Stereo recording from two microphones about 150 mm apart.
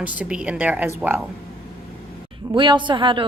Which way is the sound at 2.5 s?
30° right (ahead or behind).